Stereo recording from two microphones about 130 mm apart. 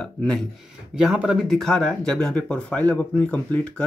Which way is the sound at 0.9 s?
5° right (ahead or behind).